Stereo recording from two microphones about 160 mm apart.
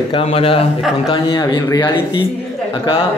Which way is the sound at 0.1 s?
40° left (ahead or behind).